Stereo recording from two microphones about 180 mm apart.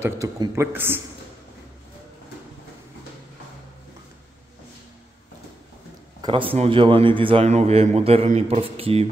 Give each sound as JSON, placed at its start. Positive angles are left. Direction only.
{"t": 0.0, "sound": "a man's voice", "side_deg": -15}
{"t": 6.2, "sound": "a man's voice", "side_deg": -30}